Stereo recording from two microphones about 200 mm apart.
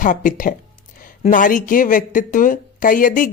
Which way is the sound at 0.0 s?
40° left (ahead or behind).